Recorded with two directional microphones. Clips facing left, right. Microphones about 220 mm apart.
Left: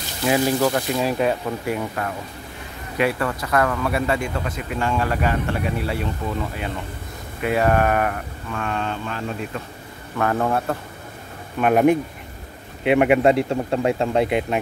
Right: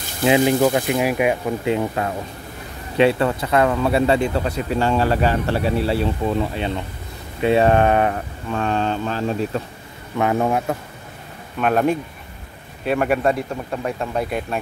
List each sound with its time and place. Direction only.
0.2 s speech: 20° right (ahead or behind)
7.4 s speech: 25° right (ahead or behind)
10.1 s a man's voice: 15° right (ahead or behind)
11.6 s speech: 15° left (ahead or behind)